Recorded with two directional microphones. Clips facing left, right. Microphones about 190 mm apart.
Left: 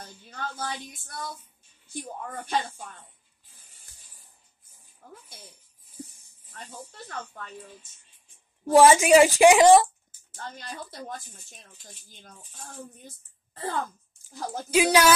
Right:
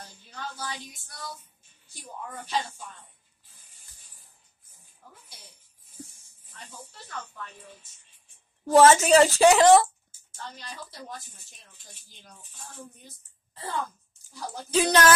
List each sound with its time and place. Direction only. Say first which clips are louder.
0.3 s speech: left 3 dB; 55° left (ahead or behind)
5.0 s speech: left 6 dB; 50° left (ahead or behind)
7.1 s speech: even; 50° left (ahead or behind)
8.7 s speech: left 1 dB; 10° left (ahead or behind)
10.3 s speech: left 3 dB; 50° left (ahead or behind)
13.0 s speech: left 4 dB; 50° left (ahead or behind)
14.7 s speech: left 1 dB; 10° left (ahead or behind)